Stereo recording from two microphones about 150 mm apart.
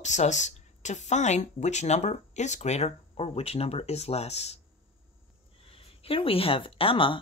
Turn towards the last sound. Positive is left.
turn(degrees=35)  # may be behind; listen again after turning